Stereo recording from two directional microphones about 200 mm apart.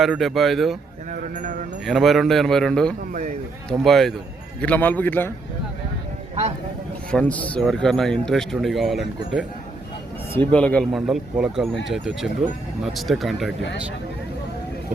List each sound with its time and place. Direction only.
0.0 s speech: centre (ahead or behind)
1.1 s speech: 40° right (ahead or behind)
1.8 s speech: centre (ahead or behind)
3.1 s speech: 45° right (ahead or behind)
3.7 s a man's voice: centre (ahead or behind)
7.1 s speech: 5° left (ahead or behind)
10.3 s speech: 5° left (ahead or behind)
12.8 s speech: centre (ahead or behind)